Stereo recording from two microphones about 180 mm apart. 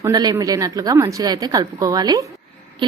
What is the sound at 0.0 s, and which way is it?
A woman's voice, 20° right (ahead or behind).